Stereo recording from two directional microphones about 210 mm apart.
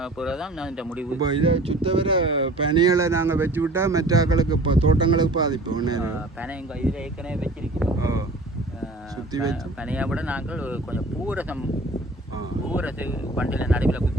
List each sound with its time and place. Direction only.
0.0 s speech: 5° right (ahead or behind)
1.2 s speech: 25° right (ahead or behind)
9.5 s speech: 5° right (ahead or behind)
12.7 s speech: 10° right (ahead or behind)